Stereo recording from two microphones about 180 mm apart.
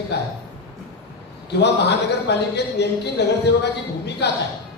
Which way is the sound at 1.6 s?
70° left (ahead or behind).